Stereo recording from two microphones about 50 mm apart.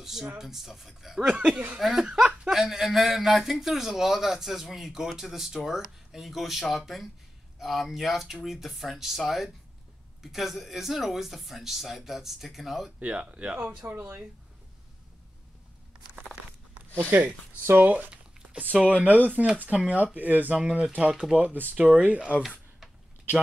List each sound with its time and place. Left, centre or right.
0.0 s speech: centre
1.2 s speech: centre
1.8 s a man's voice: centre
2.0 s speech: right
2.5 s a man's voice: centre
13.0 s speech: right
17.1 s speech: right
18.1 s a sound: right
18.9 s speech: right
20.5 s speech: right
21.4 s speech: right